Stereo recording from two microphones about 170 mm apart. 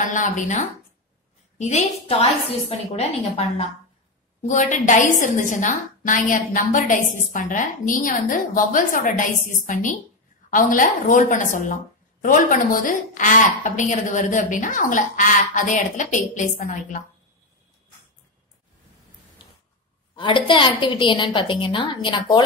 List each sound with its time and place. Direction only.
0.0 s a woman's voice: 50° left (ahead or behind)
20.2 s a woman's voice: 30° left (ahead or behind)